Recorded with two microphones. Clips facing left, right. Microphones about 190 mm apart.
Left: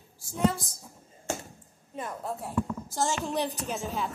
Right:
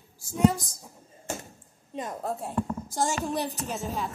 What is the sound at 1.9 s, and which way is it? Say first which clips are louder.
Speech: right 3 dB; 20° right (ahead or behind).